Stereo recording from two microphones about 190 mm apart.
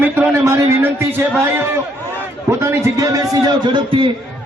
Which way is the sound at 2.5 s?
15° right (ahead or behind).